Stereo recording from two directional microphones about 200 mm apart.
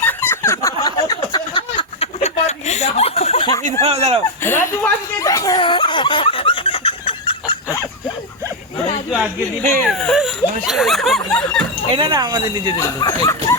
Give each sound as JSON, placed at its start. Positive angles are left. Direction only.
{"t": 0.0, "sound": "a sound", "side_deg": 10}
{"t": 3.6, "sound": "speech", "side_deg": -30}
{"t": 4.4, "sound": "chuckle", "side_deg": 15}
{"t": 9.0, "sound": "speech", "side_deg": -5}
{"t": 11.9, "sound": "speech", "side_deg": -25}
{"t": 12.7, "sound": "speech", "side_deg": 15}